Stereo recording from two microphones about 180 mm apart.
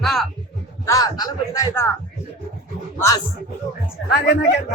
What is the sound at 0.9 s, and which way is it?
Speech, 20° left (ahead or behind).